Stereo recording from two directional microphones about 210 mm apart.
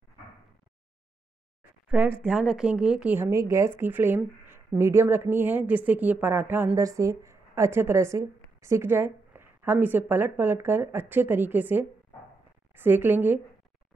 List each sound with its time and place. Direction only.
1.9 s speech: 5° right (ahead or behind)